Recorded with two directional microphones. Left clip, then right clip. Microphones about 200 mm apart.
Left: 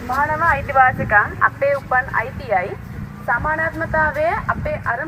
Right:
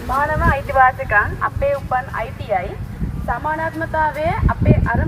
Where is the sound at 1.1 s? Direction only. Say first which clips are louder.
Left 2 dB; centre (ahead or behind).